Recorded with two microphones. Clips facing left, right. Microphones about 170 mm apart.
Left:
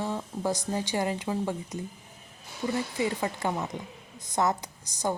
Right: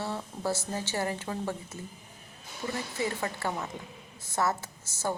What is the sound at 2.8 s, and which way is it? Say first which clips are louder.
A man's voice: left 3 dB; 15° left (ahead or behind).